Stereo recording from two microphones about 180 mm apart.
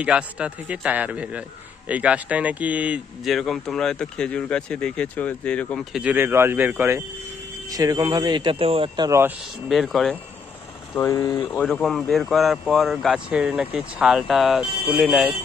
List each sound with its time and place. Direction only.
0.0 s a man's voice: 5° right (ahead or behind)
6.0 s a man's voice: 10° right (ahead or behind)
9.7 s speech: centre (ahead or behind)
11.0 s speech: 15° left (ahead or behind); by 15.3 s centre (ahead or behind)